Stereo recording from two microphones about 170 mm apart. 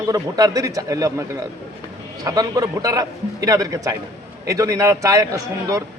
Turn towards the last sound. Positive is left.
turn(degrees=-20)  # may be behind; listen again after turning